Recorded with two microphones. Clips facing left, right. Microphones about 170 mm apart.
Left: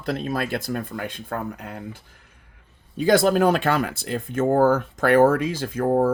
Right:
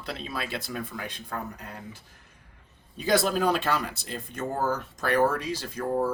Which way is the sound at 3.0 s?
55° left (ahead or behind).